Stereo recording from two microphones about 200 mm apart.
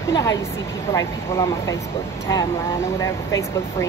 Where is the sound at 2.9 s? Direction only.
15° left (ahead or behind).